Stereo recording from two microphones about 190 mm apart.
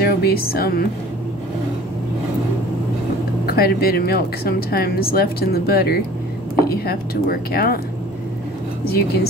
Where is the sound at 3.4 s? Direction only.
55° left (ahead or behind).